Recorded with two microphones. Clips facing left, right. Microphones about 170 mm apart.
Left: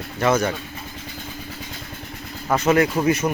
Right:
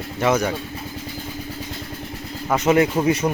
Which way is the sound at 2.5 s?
5° right (ahead or behind).